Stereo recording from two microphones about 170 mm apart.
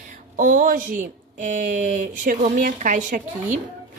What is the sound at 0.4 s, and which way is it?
A woman's voice, 50° right (ahead or behind).